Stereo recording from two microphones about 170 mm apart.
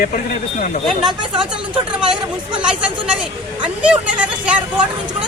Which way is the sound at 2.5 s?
5° right (ahead or behind).